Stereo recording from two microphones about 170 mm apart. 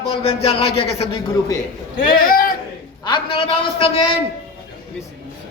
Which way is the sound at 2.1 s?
60° left (ahead or behind).